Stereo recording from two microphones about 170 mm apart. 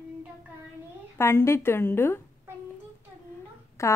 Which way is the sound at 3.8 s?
15° left (ahead or behind).